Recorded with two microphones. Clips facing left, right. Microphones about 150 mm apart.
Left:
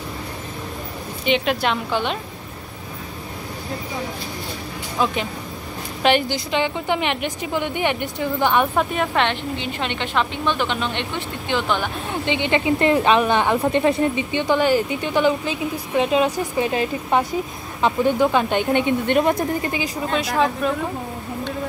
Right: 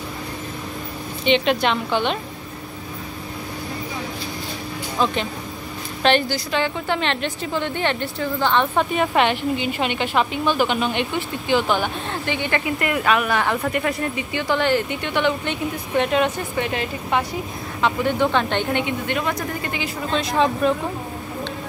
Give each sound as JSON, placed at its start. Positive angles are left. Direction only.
{"t": 1.2, "sound": "a woman's voice", "side_deg": 5}
{"t": 4.9, "sound": "a woman's voice", "side_deg": 10}
{"t": 8.7, "sound": "a woman's voice", "side_deg": 0}
{"t": 12.1, "sound": "a woman's voice", "side_deg": 20}
{"t": 17.8, "sound": "a woman's voice", "side_deg": 10}
{"t": 19.3, "sound": "speech", "side_deg": 30}
{"t": 20.1, "sound": "a woman's voice", "side_deg": 10}